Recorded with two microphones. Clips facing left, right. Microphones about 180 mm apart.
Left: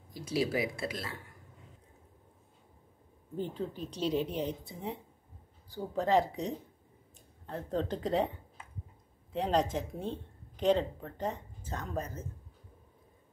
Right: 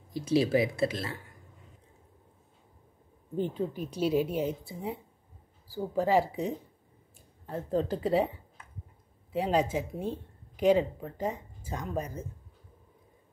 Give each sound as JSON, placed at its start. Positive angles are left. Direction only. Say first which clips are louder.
{"t": 0.1, "sound": "speech", "louder": "right 6 dB", "side_deg": -25}
{"t": 3.3, "sound": "speech", "louder": "right 5 dB", "side_deg": -15}